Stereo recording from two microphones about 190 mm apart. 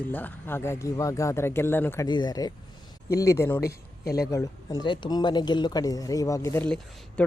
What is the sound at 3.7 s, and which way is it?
Speech, 55° left (ahead or behind).